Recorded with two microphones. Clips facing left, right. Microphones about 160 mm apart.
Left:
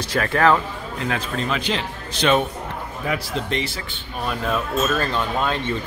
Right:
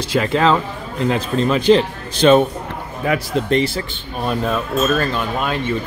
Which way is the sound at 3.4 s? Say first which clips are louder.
Right 9 dB; 35° right (ahead or behind).